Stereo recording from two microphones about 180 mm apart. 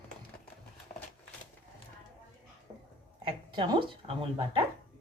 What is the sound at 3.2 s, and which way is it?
Speech, 25° right (ahead or behind).